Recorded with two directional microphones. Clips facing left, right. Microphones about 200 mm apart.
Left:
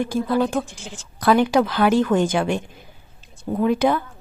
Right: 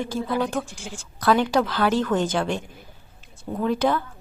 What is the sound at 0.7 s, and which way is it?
Speech, 10° right (ahead or behind).